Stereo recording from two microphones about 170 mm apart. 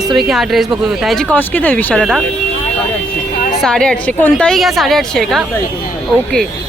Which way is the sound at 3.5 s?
5° left (ahead or behind).